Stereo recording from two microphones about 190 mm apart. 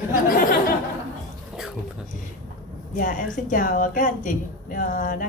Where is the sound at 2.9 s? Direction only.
45° left (ahead or behind).